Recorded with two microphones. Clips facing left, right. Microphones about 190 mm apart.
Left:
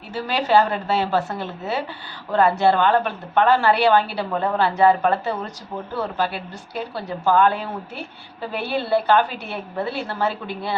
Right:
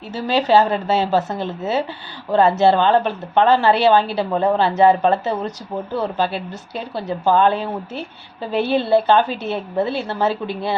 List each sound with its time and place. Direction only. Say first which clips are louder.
0.1 s a woman's voice: right 3 dB; 20° right (ahead or behind)